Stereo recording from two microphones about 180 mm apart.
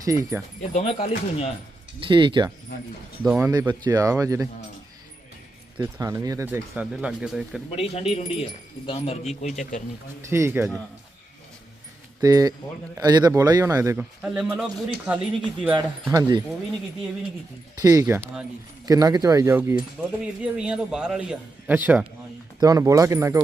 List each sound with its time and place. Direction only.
0.0 s a man's voice: 20° right (ahead or behind)
0.7 s speech: 35° left (ahead or behind)
2.0 s speech: 25° right (ahead or behind)
3.3 s a man's voice: 15° right (ahead or behind)
5.8 s a man's voice: 20° right (ahead or behind)
7.8 s speech: 35° left (ahead or behind)
10.2 s a man's voice: 15° right (ahead or behind)
12.2 s a man's voice: 20° right (ahead or behind)
16.0 s speech: 20° right (ahead or behind)
17.8 s a man's voice: 15° right (ahead or behind)